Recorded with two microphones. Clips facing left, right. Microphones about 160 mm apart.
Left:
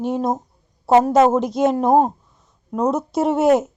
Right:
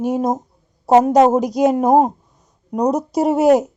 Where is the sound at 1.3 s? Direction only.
40° right (ahead or behind).